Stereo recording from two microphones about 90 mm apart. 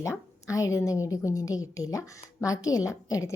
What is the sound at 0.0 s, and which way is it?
A woman's voice, 35° left (ahead or behind).